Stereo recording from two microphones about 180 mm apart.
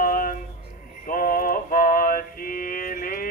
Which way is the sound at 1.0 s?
50° left (ahead or behind).